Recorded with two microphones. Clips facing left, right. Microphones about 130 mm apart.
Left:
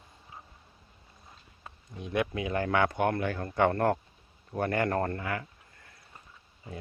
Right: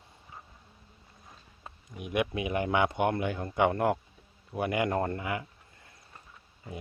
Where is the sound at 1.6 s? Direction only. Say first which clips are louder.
Even; 15° right (ahead or behind).